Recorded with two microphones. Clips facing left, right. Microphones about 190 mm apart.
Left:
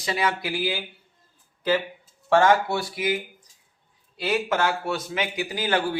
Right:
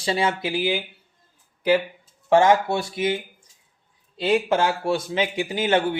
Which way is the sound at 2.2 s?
20° right (ahead or behind).